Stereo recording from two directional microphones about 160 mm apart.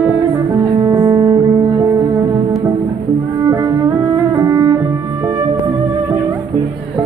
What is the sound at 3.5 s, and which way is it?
Music, 20° right (ahead or behind).